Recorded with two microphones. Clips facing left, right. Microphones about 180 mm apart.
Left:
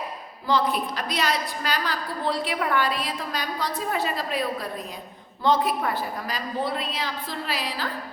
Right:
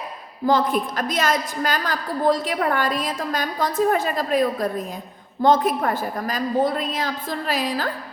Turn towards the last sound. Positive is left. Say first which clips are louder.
# right 6 dB
turn(degrees=-45)  # may be behind; listen again after turning